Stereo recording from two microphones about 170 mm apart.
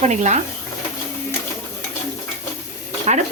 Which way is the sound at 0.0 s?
45° right (ahead or behind).